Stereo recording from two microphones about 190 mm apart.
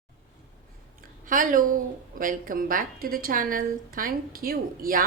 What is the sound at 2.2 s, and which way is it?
A woman's voice, 45° right (ahead or behind).